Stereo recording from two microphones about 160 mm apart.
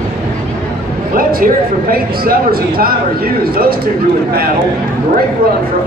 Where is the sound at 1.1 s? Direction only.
65° right (ahead or behind).